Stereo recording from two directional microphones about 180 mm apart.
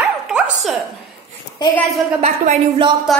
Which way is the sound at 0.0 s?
5° right (ahead or behind).